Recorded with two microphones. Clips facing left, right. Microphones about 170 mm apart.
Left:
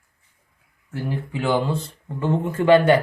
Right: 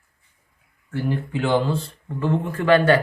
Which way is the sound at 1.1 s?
5° left (ahead or behind).